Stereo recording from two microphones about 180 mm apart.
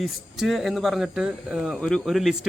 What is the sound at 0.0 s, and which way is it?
Speech, centre (ahead or behind).